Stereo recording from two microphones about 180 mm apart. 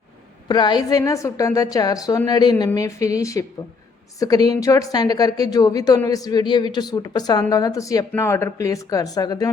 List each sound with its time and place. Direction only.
0.4 s a woman's voice: 25° left (ahead or behind)